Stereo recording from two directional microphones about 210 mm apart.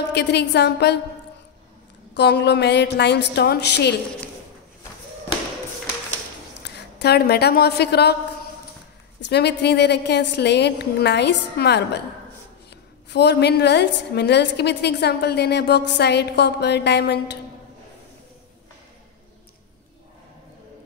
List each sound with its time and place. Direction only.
0.1 s a woman's voice: 55° left (ahead or behind)
2.1 s a woman's voice: 55° left (ahead or behind)
6.6 s a woman's voice: 50° left (ahead or behind)
9.3 s a woman's voice: 55° left (ahead or behind)